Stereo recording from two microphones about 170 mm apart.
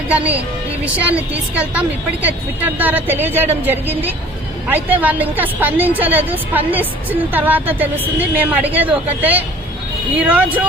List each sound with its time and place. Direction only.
0.1 s a woman's voice: 10° right (ahead or behind)